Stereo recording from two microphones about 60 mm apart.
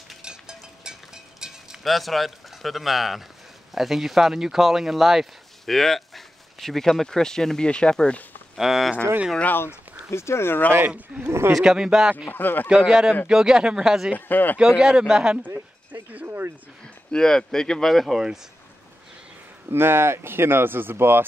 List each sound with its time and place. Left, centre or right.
0.2 s music: centre
3.7 s speech: centre
8.5 s speech: centre
10.1 s speech: left
11.2 s speech: right
11.5 s speech: centre
12.3 s speech: left
12.6 s speech: centre
14.1 s speech: left
14.6 s speech: centre
15.9 s speech: right
17.1 s speech: centre
19.7 s speech: right